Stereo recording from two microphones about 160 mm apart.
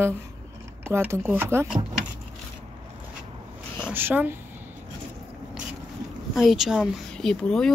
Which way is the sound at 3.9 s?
10° right (ahead or behind).